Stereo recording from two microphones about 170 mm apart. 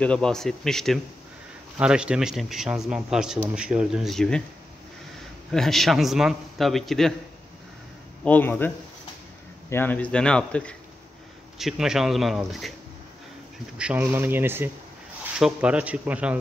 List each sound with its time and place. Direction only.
0.0 s a man's voice: 5° left (ahead or behind)
5.5 s a man's voice: centre (ahead or behind)
8.2 s a man's voice: 10° left (ahead or behind)
13.7 s speech: 10° right (ahead or behind)